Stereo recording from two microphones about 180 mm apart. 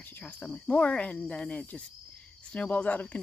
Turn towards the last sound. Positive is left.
turn(degrees=5)  # may be behind; listen again after turning